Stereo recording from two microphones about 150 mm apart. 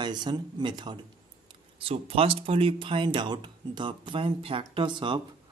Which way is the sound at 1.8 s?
40° right (ahead or behind).